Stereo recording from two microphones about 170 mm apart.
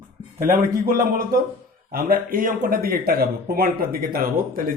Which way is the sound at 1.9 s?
55° right (ahead or behind).